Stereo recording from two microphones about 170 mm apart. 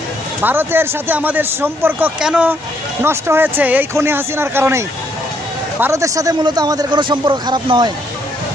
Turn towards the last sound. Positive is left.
turn(degrees=-25)  # may be behind; listen again after turning